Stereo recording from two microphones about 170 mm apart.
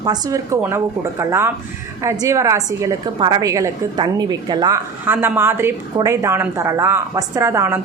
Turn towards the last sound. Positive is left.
turn(degrees=-15)  # may be behind; listen again after turning